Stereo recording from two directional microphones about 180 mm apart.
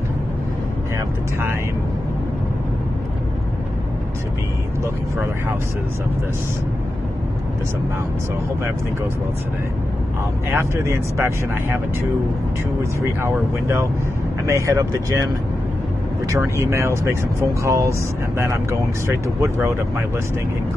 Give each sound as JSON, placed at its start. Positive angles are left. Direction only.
{"t": 10.5, "sound": "speech", "side_deg": -15}
{"t": 13.2, "sound": "speech", "side_deg": -15}
{"t": 16.3, "sound": "speech", "side_deg": -15}